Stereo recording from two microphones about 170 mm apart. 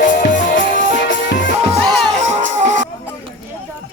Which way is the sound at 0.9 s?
90° left.